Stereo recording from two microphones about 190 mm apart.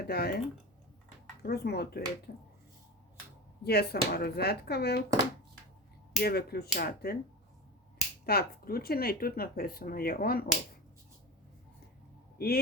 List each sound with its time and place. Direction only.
0.0 s speech: 55° left (ahead or behind)
1.4 s speech: 60° left (ahead or behind)
3.6 s speech: 55° left (ahead or behind)
6.2 s speech: 55° left (ahead or behind)
8.3 s speech: 55° left (ahead or behind)
12.4 s speech: 55° left (ahead or behind)